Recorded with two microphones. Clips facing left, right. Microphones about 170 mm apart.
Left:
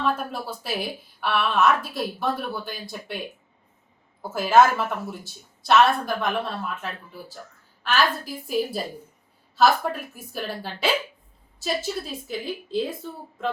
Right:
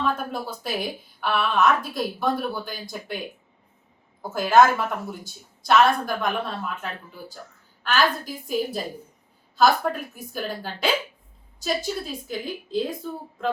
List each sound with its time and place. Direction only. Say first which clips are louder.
0.0 s a woman's voice: even; centre (ahead or behind)
4.2 s a woman's voice: even; 5° left (ahead or behind)